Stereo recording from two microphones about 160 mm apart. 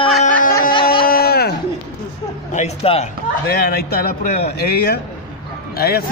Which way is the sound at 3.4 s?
70° left (ahead or behind).